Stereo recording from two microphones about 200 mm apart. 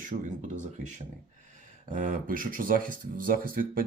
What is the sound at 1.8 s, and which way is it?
Speech, 40° right (ahead or behind).